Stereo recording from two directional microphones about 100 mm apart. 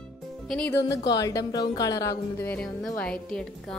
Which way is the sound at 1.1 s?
40° left (ahead or behind).